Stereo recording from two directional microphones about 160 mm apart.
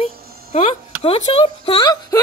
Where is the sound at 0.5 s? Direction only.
35° left (ahead or behind).